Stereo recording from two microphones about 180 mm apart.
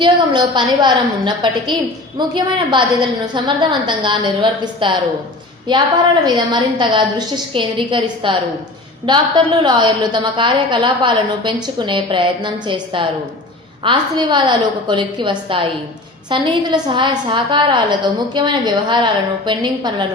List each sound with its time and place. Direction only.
0.0 s a woman's voice: 25° right (ahead or behind)